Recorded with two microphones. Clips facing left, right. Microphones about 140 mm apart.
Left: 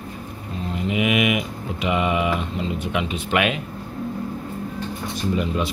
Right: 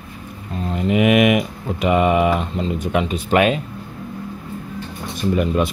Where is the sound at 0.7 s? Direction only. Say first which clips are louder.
Right 6 dB; 45° right (ahead or behind).